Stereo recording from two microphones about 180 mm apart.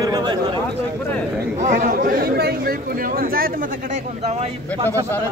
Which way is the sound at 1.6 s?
45° right (ahead or behind).